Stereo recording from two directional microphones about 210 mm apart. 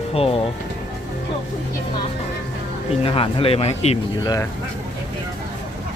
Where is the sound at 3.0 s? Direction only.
25° left (ahead or behind).